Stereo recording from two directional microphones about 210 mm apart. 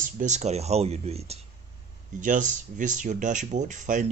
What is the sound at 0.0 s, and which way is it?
Speech, 35° right (ahead or behind).